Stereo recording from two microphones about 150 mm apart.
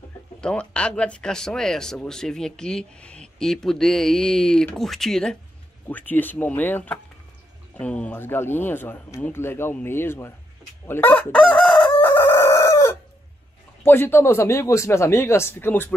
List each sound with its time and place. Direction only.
0.4 s speech: 5° left (ahead or behind)
10.9 s chicken: 15° left (ahead or behind)
12.0 s chicken: 15° left (ahead or behind)
13.8 s speech: 15° left (ahead or behind)